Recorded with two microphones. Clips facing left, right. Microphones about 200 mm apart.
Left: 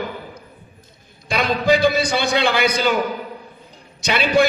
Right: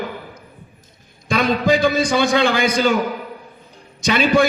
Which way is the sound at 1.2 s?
45° right (ahead or behind).